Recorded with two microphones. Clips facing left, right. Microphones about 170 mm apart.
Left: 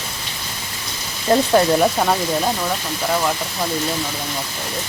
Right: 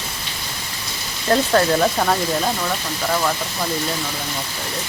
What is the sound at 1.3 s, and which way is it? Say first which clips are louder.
Speech: left 2 dB; 15° left (ahead or behind).